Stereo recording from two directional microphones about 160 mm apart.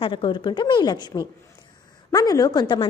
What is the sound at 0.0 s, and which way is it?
A woman's voice, 30° left (ahead or behind).